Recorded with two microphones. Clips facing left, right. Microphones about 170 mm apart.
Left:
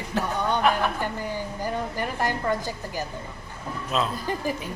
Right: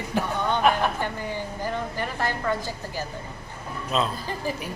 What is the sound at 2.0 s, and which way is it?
A woman's voice, 15° left (ahead or behind).